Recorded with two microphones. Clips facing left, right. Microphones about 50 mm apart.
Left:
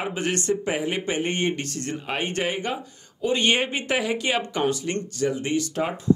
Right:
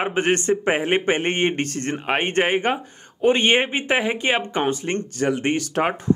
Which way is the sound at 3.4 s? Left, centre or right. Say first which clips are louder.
Right 4 dB; right.